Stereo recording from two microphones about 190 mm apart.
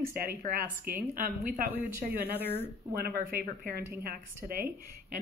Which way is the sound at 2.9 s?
50° right (ahead or behind).